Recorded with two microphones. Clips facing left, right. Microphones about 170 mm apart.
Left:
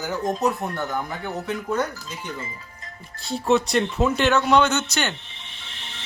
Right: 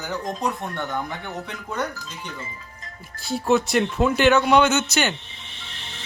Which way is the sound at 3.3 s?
Centre (ahead or behind).